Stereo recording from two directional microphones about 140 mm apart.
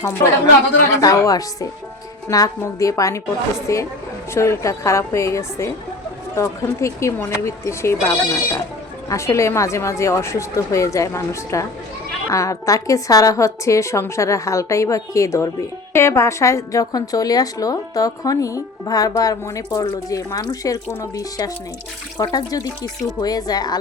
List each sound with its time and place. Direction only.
0.0 s a woman's voice: 25° left (ahead or behind)